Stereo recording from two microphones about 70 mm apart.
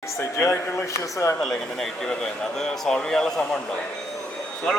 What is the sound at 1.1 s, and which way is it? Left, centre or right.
Speech, left.